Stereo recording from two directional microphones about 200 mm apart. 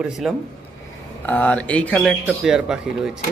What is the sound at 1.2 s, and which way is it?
Speech, 10° left (ahead or behind).